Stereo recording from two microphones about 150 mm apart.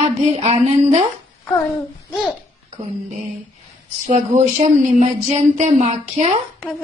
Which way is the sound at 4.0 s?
50° right (ahead or behind).